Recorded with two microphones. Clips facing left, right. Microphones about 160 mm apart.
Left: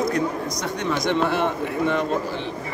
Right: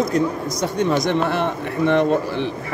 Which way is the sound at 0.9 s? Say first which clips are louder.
Left 1 dB; 55° right (ahead or behind).